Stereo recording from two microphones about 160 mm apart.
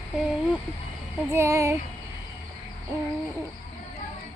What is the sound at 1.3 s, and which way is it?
Speech, 20° right (ahead or behind).